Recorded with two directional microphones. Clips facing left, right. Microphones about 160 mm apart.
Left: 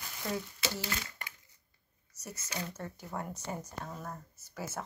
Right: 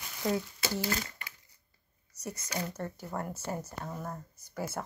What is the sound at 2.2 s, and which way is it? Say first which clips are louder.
Speech: right 6 dB; 15° right (ahead or behind).